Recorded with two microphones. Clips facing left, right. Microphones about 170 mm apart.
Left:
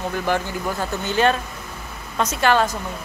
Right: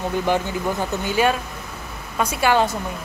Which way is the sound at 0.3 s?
15° right (ahead or behind).